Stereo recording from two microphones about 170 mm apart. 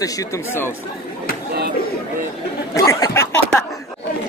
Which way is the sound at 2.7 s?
20° left (ahead or behind).